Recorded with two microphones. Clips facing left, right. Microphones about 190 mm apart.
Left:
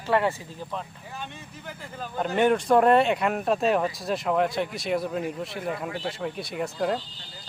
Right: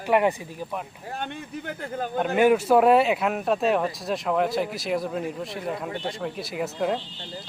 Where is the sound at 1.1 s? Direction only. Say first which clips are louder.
Right 9 dB; 60° right (ahead or behind).